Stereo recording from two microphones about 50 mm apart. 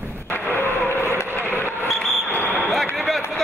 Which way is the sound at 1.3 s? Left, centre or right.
Left.